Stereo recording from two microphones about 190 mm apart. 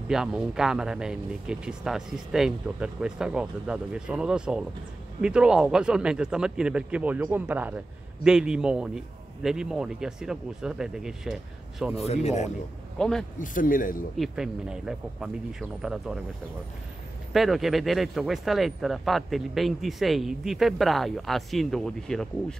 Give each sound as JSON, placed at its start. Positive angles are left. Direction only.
{"t": 0.1, "sound": "speech", "side_deg": -5}
{"t": 12.1, "sound": "speech", "side_deg": 35}
{"t": 13.0, "sound": "speech", "side_deg": 5}
{"t": 13.4, "sound": "a man's voice", "side_deg": 45}
{"t": 14.1, "sound": "speech", "side_deg": 0}
{"t": 17.3, "sound": "speech", "side_deg": 0}